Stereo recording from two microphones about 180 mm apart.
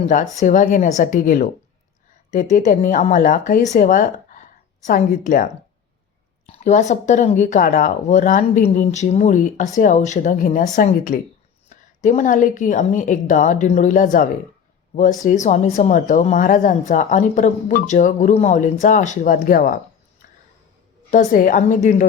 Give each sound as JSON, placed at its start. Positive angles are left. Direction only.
{"t": 0.0, "sound": "speech", "side_deg": 45}
{"t": 21.1, "sound": "speech", "side_deg": 45}